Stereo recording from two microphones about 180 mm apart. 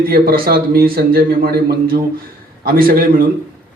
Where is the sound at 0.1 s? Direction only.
55° right (ahead or behind).